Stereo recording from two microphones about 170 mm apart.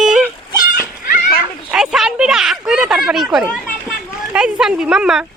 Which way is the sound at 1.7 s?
5° right (ahead or behind).